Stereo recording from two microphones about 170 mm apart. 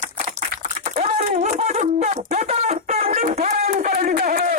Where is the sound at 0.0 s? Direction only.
45° right (ahead or behind).